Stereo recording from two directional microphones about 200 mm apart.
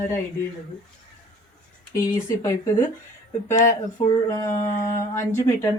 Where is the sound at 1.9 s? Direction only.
15° left (ahead or behind).